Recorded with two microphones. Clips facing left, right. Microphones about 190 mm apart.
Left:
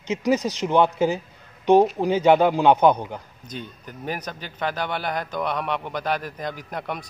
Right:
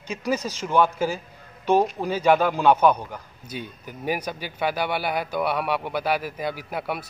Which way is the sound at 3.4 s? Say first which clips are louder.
Right 3 dB; 10° right (ahead or behind).